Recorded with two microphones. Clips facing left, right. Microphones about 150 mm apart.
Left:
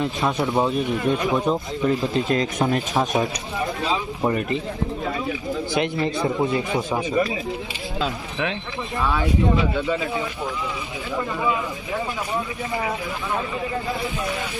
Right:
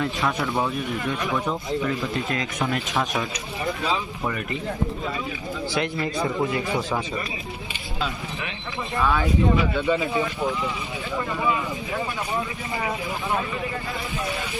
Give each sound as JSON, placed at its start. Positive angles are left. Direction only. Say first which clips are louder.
{"t": 0.0, "sound": "speech", "louder": "left 2 dB", "side_deg": 20}
{"t": 3.0, "sound": "speech", "louder": "left 5 dB", "side_deg": 25}
{"t": 5.7, "sound": "speech", "louder": "left 3 dB", "side_deg": 20}
{"t": 7.9, "sound": "speech", "louder": "left 4 dB", "side_deg": 90}